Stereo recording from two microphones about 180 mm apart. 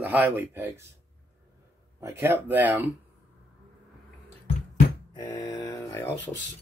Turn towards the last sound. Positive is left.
turn(degrees=15)  # may be behind; listen again after turning